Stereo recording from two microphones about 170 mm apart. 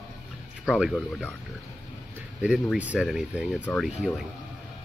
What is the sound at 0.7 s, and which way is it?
Speech, centre (ahead or behind).